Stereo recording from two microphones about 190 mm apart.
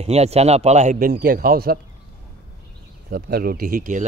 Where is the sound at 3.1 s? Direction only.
50° right (ahead or behind).